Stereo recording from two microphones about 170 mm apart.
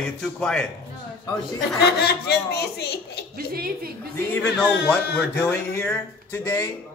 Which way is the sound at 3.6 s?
60° right (ahead or behind).